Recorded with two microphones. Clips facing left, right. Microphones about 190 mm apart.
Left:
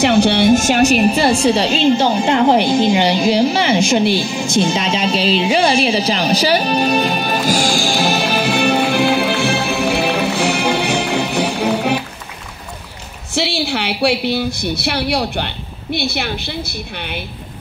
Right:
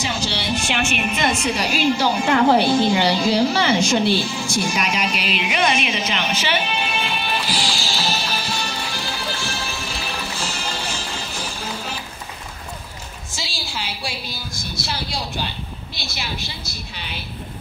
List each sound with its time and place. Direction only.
0.0 s a woman's voice: 60° left (ahead or behind); by 4.0 s 25° left (ahead or behind)
4.0 s music: 15° left (ahead or behind); by 12.0 s 65° left (ahead or behind)
13.3 s a woman's voice: 65° left (ahead or behind)